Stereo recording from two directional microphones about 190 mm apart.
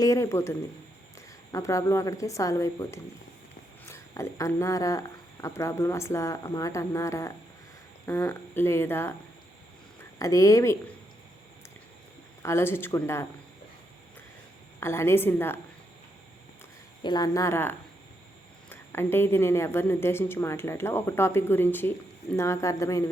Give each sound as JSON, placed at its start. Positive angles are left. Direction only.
{"t": 0.0, "sound": "speech", "side_deg": 15}
{"t": 1.5, "sound": "speech", "side_deg": 15}
{"t": 12.4, "sound": "speech", "side_deg": 15}
{"t": 14.8, "sound": "speech", "side_deg": 15}
{"t": 17.0, "sound": "speech", "side_deg": 20}